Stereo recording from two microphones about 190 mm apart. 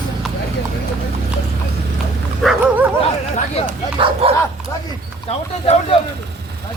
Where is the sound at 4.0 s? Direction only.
30° right (ahead or behind).